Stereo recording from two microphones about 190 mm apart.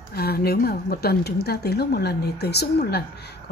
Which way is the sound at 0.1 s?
55° left (ahead or behind).